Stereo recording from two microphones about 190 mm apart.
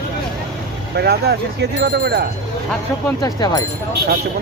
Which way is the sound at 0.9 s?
60° right (ahead or behind).